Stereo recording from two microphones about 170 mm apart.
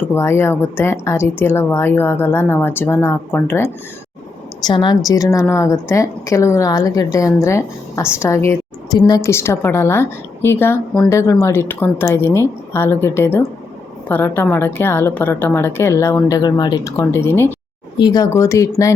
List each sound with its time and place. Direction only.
0.1 s speech: 15° left (ahead or behind)
4.6 s a woman's voice: 25° left (ahead or behind)